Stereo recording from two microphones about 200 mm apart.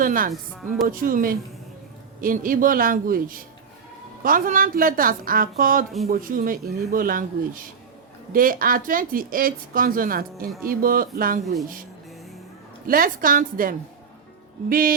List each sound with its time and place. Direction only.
0.0 s speech: 45° right (ahead or behind)
12.9 s speech: 45° right (ahead or behind)